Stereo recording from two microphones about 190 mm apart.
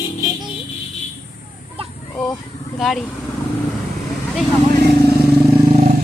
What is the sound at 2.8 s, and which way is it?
Speech, centre (ahead or behind).